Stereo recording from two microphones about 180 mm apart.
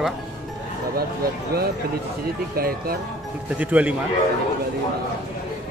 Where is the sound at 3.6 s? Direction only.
10° right (ahead or behind).